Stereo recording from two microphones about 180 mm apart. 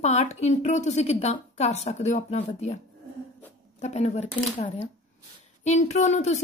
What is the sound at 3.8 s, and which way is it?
A woman's voice, 40° left (ahead or behind).